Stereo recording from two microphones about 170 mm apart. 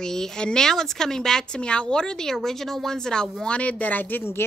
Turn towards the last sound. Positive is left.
turn(degrees=10)  # may be behind; listen again after turning